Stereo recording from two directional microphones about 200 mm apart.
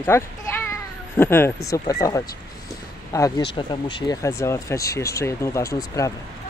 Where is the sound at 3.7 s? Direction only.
25° left (ahead or behind).